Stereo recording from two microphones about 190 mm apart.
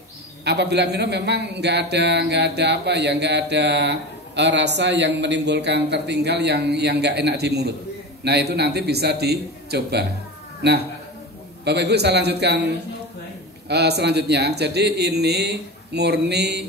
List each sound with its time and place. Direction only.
0.5 s a man's voice: 60° right (ahead or behind)
11.6 s a man's voice: 60° right (ahead or behind)